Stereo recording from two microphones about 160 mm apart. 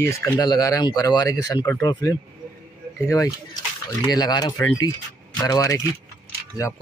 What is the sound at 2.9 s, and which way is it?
Speech, 20° left (ahead or behind).